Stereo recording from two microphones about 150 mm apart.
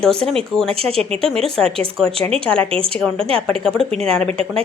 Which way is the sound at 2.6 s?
35° right (ahead or behind).